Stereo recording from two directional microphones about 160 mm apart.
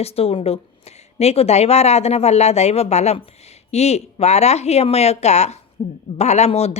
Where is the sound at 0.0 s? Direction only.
40° left (ahead or behind).